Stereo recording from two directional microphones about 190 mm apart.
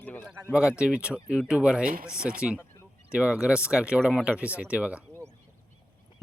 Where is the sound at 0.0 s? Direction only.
10° left (ahead or behind).